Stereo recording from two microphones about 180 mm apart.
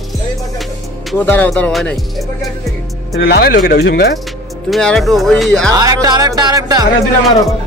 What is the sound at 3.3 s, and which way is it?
Speech, 65° left (ahead or behind).